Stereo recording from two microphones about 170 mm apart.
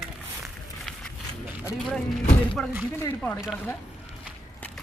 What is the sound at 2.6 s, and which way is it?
Speech, 5° left (ahead or behind).